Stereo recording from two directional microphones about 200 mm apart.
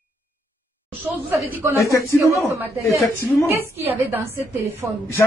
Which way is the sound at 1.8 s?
15° left (ahead or behind).